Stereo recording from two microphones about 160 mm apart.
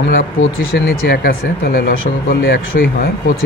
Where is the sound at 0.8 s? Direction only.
75° left (ahead or behind).